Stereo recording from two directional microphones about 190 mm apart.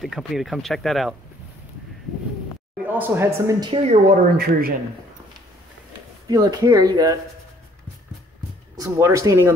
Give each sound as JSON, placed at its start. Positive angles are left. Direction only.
{"t": 0.0, "sound": "speech", "side_deg": 0}
{"t": 2.9, "sound": "speech", "side_deg": -10}
{"t": 4.4, "sound": "a man's voice", "side_deg": -50}
{"t": 6.2, "sound": "speech", "side_deg": -20}
{"t": 8.7, "sound": "speech", "side_deg": -15}